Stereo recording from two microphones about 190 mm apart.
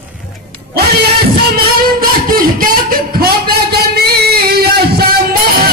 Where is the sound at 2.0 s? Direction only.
50° right (ahead or behind).